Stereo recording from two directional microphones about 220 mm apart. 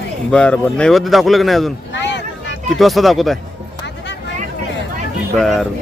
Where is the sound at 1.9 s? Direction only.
55° left (ahead or behind).